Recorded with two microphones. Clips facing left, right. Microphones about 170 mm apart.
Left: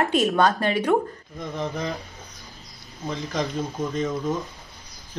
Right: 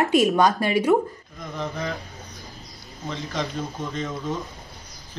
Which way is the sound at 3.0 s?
15° left (ahead or behind).